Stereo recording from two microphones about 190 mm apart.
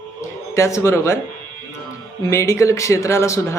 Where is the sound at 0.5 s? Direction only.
15° left (ahead or behind).